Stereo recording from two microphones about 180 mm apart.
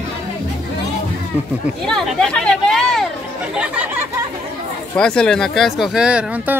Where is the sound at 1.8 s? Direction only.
5° left (ahead or behind).